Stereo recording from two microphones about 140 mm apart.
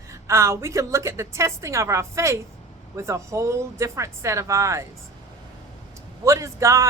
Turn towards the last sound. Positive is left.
turn(degrees=-20)  # may be behind; listen again after turning